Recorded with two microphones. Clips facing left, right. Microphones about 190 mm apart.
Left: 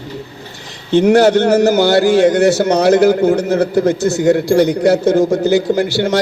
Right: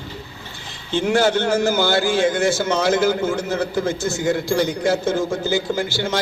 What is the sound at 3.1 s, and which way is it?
Speech, 40° left (ahead or behind).